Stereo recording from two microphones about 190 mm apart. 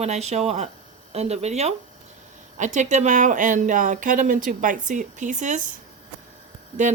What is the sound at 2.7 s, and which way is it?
A woman's voice, 40° right (ahead or behind).